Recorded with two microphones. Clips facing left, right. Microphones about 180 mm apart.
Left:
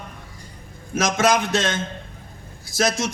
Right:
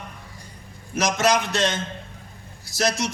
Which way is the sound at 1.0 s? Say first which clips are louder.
Left 2 dB; 50° left (ahead or behind).